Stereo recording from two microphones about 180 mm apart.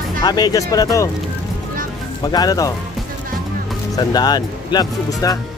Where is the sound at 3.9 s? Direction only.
20° left (ahead or behind).